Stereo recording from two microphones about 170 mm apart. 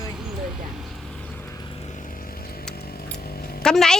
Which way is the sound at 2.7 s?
65° left (ahead or behind).